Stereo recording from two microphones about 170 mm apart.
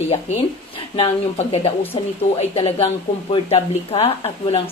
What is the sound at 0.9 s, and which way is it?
A woman's voice, 35° left (ahead or behind).